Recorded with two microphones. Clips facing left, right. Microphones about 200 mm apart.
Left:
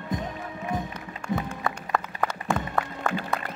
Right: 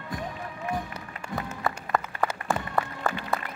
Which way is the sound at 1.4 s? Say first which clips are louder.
Left 1 dB; centre (ahead or behind).